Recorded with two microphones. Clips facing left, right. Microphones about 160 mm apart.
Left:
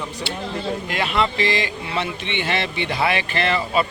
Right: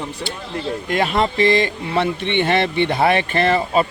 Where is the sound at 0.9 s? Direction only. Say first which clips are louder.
Right 5 dB; 45° right (ahead or behind).